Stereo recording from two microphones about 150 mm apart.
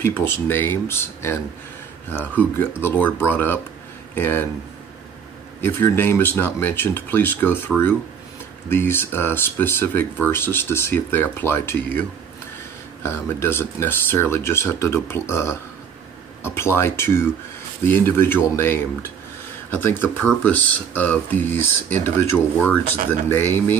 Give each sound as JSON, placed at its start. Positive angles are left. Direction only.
{"t": 0.0, "sound": "speech", "side_deg": 15}
{"t": 5.6, "sound": "speech", "side_deg": 15}